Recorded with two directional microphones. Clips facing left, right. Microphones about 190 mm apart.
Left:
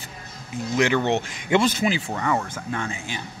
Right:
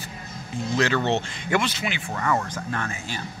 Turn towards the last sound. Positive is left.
turn(degrees=15)  # may be behind; listen again after turning